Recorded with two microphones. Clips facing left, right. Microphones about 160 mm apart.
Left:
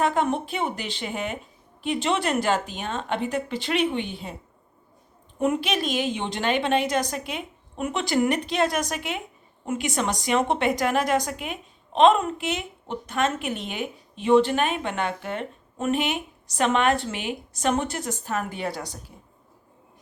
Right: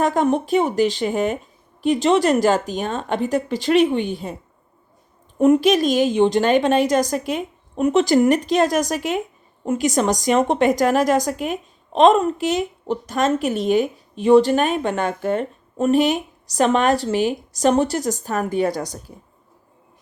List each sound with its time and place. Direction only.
0.0 s a woman's voice: 40° right (ahead or behind)
5.4 s a woman's voice: 40° right (ahead or behind)